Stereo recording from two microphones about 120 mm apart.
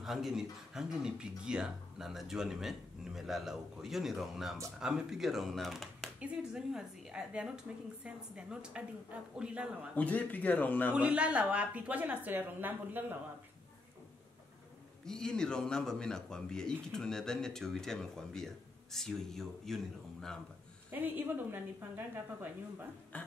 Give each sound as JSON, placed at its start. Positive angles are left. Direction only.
{"t": 0.0, "sound": "a woman's voice", "side_deg": 0}
{"t": 9.9, "sound": "speech", "side_deg": 15}
{"t": 11.0, "sound": "a woman's voice", "side_deg": -10}
{"t": 15.0, "sound": "speech", "side_deg": 5}
{"t": 20.9, "sound": "a woman's voice", "side_deg": -15}
{"t": 23.1, "sound": "beatboxing", "side_deg": 10}